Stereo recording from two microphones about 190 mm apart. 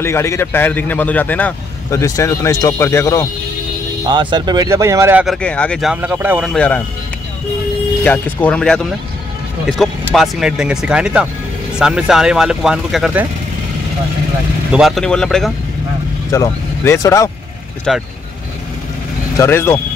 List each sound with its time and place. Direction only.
0.0 s speech: 15° left (ahead or behind)
4.1 s speech: 25° right (ahead or behind)
5.2 s speech: 5° left (ahead or behind)
6.5 s speech: 5° left (ahead or behind)
8.0 s speech: 10° left (ahead or behind)
14.7 s speech: centre (ahead or behind)
16.3 s speech: 15° left (ahead or behind)
17.9 s speech: centre (ahead or behind)
19.3 s speech: 15° left (ahead or behind)